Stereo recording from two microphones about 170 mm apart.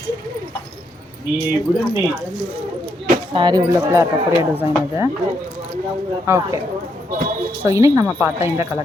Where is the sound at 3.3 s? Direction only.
25° right (ahead or behind).